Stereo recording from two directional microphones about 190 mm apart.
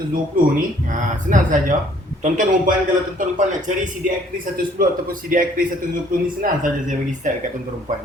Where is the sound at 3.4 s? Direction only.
40° right (ahead or behind).